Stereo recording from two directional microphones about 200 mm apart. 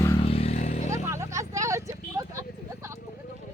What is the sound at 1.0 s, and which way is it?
Vehicle, 15° right (ahead or behind).